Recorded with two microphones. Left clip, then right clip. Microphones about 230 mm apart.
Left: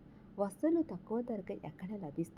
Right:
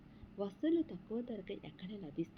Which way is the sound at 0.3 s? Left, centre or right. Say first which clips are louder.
Left 3 dB; centre.